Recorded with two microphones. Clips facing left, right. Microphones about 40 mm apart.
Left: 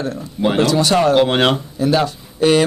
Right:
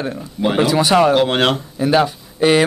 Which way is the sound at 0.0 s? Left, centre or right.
Centre.